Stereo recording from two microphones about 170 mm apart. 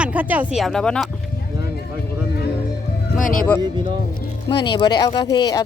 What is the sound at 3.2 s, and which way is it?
Speech, 55° left (ahead or behind).